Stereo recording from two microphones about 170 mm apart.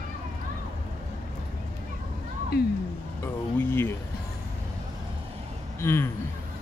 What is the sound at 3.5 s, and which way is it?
Speech, 10° left (ahead or behind).